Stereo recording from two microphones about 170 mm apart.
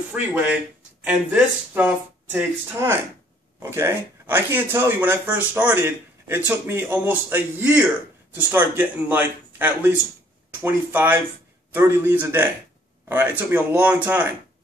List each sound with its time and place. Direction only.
0.1 s a man's voice: 10° right (ahead or behind)